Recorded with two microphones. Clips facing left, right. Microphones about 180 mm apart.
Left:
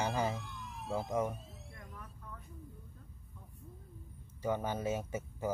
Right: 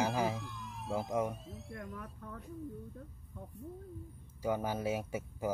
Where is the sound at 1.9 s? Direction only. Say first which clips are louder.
Right 5 dB; 60° right (ahead or behind).